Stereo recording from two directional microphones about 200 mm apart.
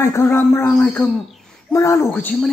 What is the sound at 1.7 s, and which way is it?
Speech, 15° left (ahead or behind).